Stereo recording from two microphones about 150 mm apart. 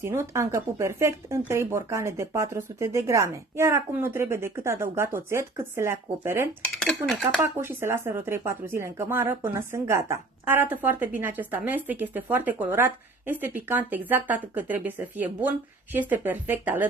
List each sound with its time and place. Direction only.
0.0 s speech: 20° right (ahead or behind)
7.1 s speech: centre (ahead or behind)
7.4 s speech: 15° right (ahead or behind)